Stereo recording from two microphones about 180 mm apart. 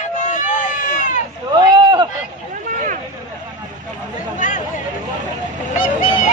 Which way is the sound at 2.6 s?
45° right (ahead or behind).